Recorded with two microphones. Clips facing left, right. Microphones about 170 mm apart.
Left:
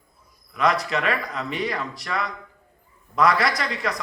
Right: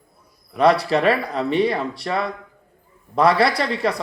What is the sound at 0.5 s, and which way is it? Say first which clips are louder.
A man's voice: right 6 dB; 30° right (ahead or behind).